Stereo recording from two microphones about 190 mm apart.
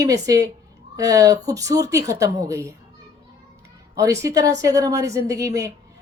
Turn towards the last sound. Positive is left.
turn(degrees=-15)  # may be behind; listen again after turning